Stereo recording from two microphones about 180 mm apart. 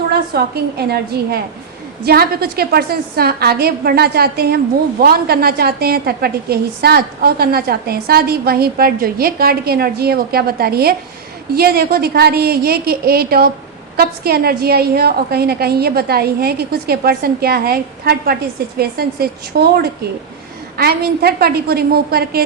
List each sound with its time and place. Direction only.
0.1 s a woman's voice: 60° right (ahead or behind)